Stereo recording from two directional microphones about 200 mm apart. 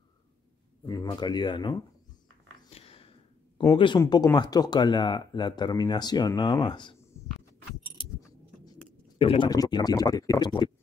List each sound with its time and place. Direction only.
0.8 s speech: 20° left (ahead or behind)
2.7 s a sound: 30° left (ahead or behind)
3.5 s speech: 25° left (ahead or behind)
9.2 s speech: 25° left (ahead or behind)